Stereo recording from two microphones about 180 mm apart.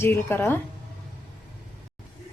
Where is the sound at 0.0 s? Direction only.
15° left (ahead or behind).